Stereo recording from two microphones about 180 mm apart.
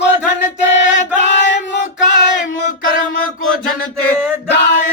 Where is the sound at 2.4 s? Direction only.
50° left (ahead or behind).